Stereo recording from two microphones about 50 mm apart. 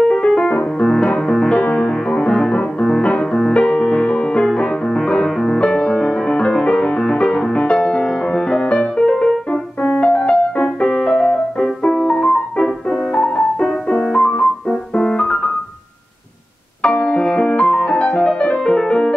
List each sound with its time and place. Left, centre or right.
0.0 s keyboard: centre
1.0 s music: centre
1.5 s music: left
16.8 s music: left